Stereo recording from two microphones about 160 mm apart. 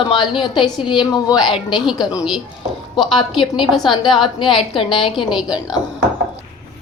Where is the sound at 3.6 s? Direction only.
Centre (ahead or behind).